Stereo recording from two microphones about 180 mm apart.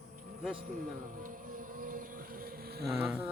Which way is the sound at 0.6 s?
50° right (ahead or behind).